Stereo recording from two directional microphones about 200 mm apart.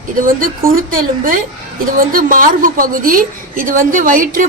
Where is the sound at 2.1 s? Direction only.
45° right (ahead or behind).